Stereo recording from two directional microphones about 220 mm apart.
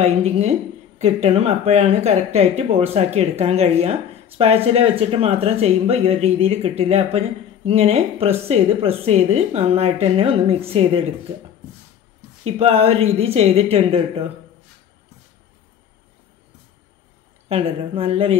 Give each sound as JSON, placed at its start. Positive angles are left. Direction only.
{"t": 0.0, "sound": "speech", "side_deg": -30}
{"t": 12.4, "sound": "speech", "side_deg": -25}
{"t": 17.5, "sound": "speech", "side_deg": -25}